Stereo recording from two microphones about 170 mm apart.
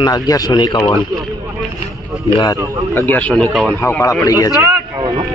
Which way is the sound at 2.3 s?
20° left (ahead or behind).